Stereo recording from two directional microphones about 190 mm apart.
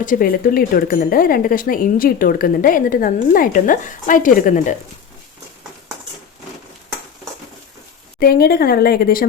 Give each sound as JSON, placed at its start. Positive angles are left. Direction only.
{"t": 0.0, "sound": "speech", "side_deg": 45}
{"t": 8.2, "sound": "speech", "side_deg": 55}